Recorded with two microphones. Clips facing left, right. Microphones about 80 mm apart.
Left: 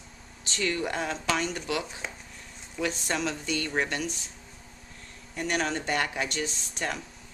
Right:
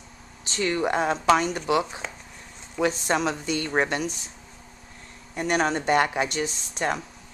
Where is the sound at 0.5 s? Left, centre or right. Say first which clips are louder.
Right 5 dB; right.